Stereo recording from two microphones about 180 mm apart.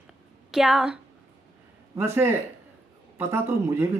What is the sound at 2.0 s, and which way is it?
Speech, 15° right (ahead or behind).